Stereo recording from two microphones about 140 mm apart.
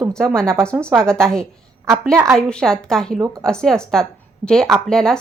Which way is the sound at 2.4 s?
5° left (ahead or behind).